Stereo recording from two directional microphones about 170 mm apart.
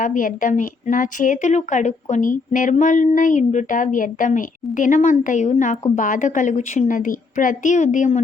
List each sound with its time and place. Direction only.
0.0 s a woman's voice: 50° left (ahead or behind)